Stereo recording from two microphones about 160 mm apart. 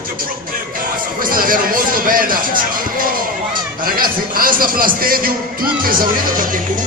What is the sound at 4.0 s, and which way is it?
Speech, 65° right (ahead or behind).